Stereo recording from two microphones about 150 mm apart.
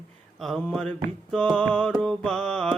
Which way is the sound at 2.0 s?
5° left (ahead or behind).